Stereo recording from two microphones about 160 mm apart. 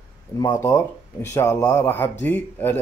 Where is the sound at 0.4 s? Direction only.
20° left (ahead or behind).